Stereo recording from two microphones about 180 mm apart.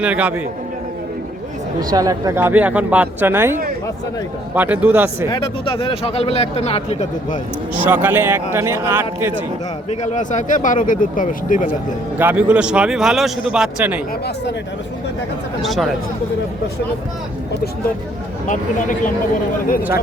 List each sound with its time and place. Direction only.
0.0 s speech: 10° right (ahead or behind)
1.9 s speech: 20° right (ahead or behind)
5.3 s speech: 30° left (ahead or behind)
7.9 s speech: 10° right (ahead or behind)
9.9 s speech: 40° left (ahead or behind)
12.2 s a man's voice: 10° right (ahead or behind)
15.6 s a man's voice: centre (ahead or behind)
18.4 s speech: 45° left (ahead or behind)